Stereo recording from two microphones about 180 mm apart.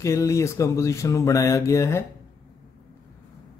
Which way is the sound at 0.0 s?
15° left (ahead or behind).